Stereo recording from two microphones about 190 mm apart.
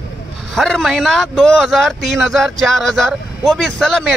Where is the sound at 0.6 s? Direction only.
Centre (ahead or behind).